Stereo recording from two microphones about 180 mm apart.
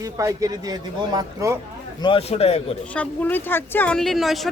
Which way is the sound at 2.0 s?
30° left (ahead or behind).